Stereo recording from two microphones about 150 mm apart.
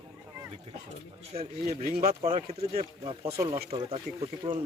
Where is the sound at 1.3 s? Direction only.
40° right (ahead or behind).